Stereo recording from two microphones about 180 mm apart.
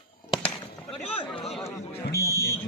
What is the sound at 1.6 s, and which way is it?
Speech, 15° left (ahead or behind).